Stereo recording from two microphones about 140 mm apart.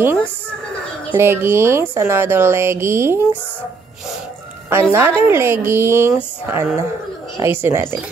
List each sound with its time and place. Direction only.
1.1 s a woman's voice: 15° right (ahead or behind)
4.6 s a woman's voice: 15° right (ahead or behind)